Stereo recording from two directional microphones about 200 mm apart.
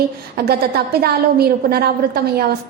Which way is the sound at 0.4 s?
50° right (ahead or behind).